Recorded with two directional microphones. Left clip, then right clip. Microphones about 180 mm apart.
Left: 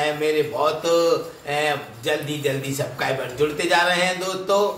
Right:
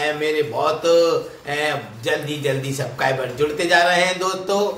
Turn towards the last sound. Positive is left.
turn(degrees=-15)  # may be behind; listen again after turning